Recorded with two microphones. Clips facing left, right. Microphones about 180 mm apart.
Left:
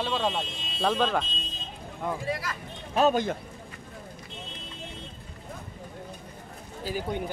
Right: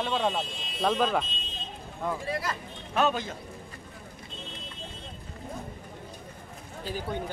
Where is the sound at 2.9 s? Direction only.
35° left (ahead or behind).